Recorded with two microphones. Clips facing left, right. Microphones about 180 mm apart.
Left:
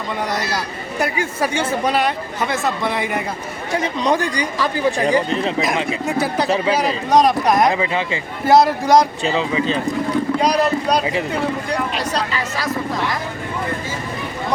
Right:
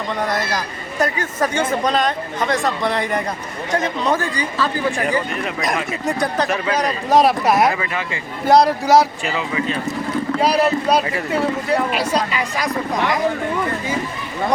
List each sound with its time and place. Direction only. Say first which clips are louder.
0.5 s speech: even; 10° left (ahead or behind)
4.9 s speech: left 3 dB; 35° left (ahead or behind)
5.6 s speech: left 1 dB; 5° left (ahead or behind)
7.1 s speech: even; 5° right (ahead or behind)
7.7 s speech: left 3 dB; 20° left (ahead or behind)
8.4 s speech: even; centre (ahead or behind)
9.2 s speech: left 3 dB; 25° left (ahead or behind)
10.4 s speech: right 3 dB; 5° right (ahead or behind)
11.0 s speech: left 3 dB; 20° left (ahead or behind)
11.3 s speech: right 2 dB; 5° right (ahead or behind)